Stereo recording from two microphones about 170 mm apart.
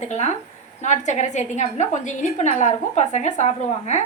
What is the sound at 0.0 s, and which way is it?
A woman's voice, 40° left (ahead or behind).